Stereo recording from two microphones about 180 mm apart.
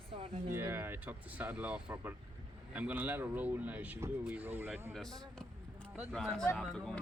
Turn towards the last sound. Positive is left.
turn(degrees=0)  # may be behind; listen again after turning